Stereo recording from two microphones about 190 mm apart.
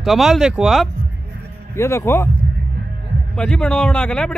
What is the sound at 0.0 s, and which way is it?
Speech, centre (ahead or behind).